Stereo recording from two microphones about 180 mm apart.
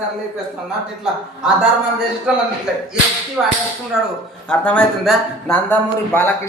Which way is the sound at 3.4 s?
5° right (ahead or behind).